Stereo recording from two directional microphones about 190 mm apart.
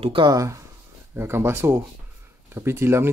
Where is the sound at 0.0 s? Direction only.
25° right (ahead or behind).